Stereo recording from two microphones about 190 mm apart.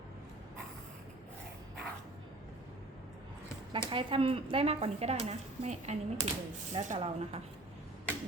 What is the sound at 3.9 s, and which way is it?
A woman's voice, 30° right (ahead or behind).